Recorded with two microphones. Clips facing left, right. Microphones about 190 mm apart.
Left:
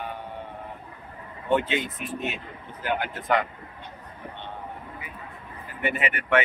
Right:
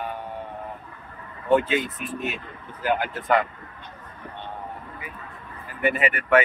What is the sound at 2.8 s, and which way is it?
Speech, 40° right (ahead or behind).